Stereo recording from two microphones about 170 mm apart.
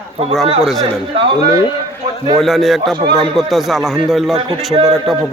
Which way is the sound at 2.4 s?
Centre (ahead or behind).